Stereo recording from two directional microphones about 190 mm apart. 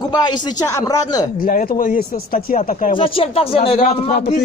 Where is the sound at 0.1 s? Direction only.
20° left (ahead or behind).